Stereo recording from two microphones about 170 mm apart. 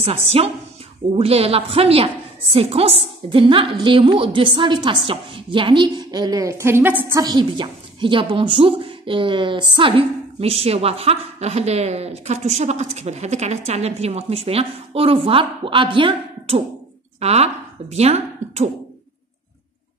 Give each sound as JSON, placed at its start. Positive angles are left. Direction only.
{"t": 0.0, "sound": "a woman's voice", "side_deg": -35}